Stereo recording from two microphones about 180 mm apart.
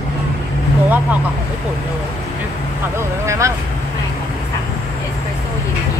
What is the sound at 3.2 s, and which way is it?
Vehicle, 15° right (ahead or behind).